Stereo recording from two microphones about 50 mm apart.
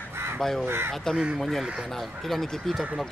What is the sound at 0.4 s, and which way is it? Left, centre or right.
Speech, centre.